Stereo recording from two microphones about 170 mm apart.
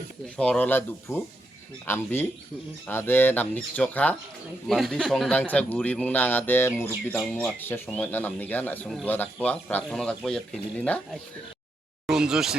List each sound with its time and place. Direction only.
0.3 s speech: 5° left (ahead or behind)
7.2 s speech: centre (ahead or behind)
12.0 s speech: 5° right (ahead or behind)